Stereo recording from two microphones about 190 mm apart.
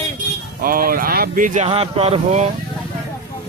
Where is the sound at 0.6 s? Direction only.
50° right (ahead or behind); by 2.5 s 35° right (ahead or behind).